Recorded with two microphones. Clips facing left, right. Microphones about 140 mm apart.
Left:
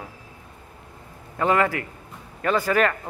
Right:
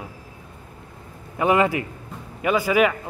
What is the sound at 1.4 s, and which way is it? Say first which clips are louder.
A man's voice: right 2 dB; 15° right (ahead or behind).